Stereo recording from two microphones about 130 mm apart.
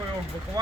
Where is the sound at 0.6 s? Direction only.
30° right (ahead or behind).